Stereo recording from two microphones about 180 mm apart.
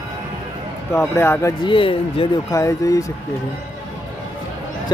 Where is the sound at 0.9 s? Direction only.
15° left (ahead or behind).